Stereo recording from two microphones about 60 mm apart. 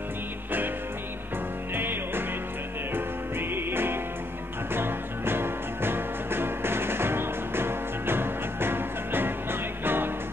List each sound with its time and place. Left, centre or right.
1.8 s music: right